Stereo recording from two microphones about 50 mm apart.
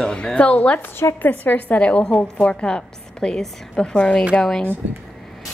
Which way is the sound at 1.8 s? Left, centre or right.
Left.